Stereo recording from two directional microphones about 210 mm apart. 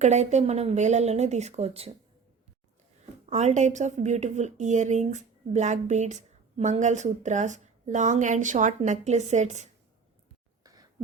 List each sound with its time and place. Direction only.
0.0 s a woman's voice: 35° right (ahead or behind)
3.2 s a woman's voice: 35° right (ahead or behind)
10.6 s a sound: 15° right (ahead or behind)